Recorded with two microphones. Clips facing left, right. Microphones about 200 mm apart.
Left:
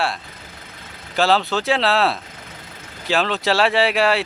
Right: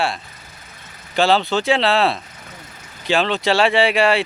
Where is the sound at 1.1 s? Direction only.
Centre (ahead or behind).